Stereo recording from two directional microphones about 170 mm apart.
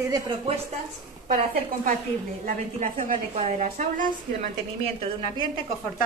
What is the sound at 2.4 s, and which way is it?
A woman's voice, 50° right (ahead or behind).